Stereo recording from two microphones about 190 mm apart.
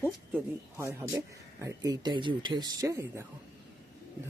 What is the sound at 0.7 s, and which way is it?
Speech, 15° right (ahead or behind).